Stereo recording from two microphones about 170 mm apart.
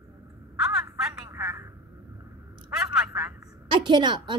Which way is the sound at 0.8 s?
15° right (ahead or behind).